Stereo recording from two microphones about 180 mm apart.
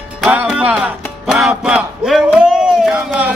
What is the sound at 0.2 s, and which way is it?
Music, 5° right (ahead or behind).